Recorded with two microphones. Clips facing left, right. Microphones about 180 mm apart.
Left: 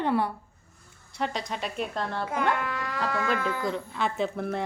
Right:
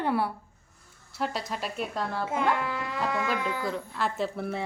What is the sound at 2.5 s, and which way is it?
Speech, 25° right (ahead or behind).